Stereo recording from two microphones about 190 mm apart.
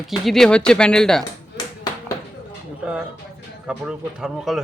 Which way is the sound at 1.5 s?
20° left (ahead or behind).